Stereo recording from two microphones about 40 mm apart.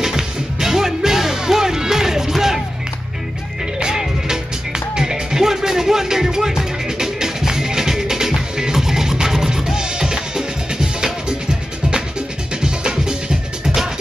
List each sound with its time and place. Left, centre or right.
0.0 s music: centre
3.8 s music: centre
12.6 s music: centre